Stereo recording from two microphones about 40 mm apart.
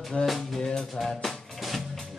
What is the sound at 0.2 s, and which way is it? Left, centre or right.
Music, left.